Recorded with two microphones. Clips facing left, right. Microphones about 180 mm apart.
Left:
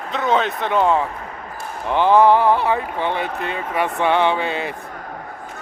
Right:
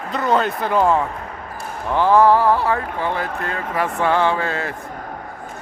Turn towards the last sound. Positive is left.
turn(degrees=20)  # may be behind; listen again after turning